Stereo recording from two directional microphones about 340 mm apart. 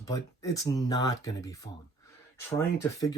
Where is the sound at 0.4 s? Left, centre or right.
Centre.